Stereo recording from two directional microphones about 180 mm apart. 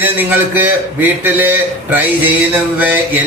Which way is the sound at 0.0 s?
10° right (ahead or behind).